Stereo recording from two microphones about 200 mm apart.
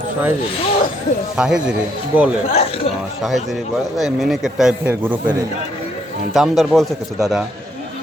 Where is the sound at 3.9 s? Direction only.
Centre (ahead or behind).